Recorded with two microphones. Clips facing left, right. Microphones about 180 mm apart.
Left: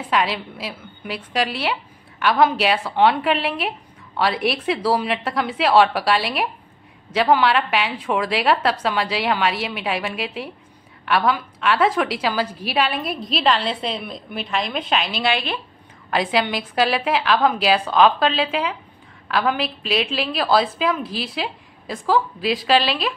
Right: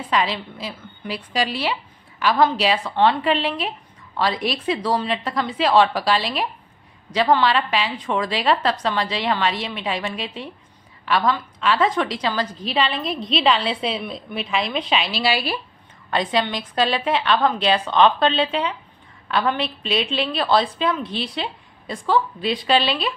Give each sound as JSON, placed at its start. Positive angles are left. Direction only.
{"t": 0.1, "sound": "a woman's voice", "side_deg": 5}
{"t": 16.1, "sound": "a woman's voice", "side_deg": 5}